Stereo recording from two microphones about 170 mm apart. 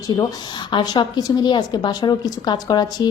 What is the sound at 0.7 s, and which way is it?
A woman's voice, 25° left (ahead or behind).